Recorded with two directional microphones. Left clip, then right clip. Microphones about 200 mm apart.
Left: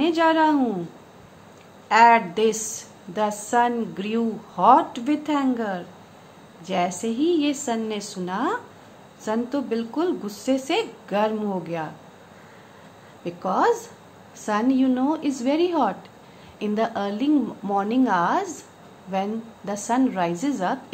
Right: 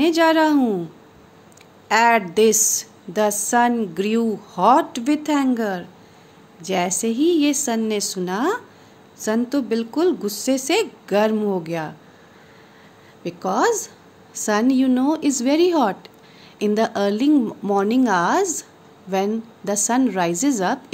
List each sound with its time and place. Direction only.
0.0 s a woman's voice: 50° right (ahead or behind)
1.9 s a woman's voice: 50° right (ahead or behind)
13.2 s a woman's voice: 50° right (ahead or behind)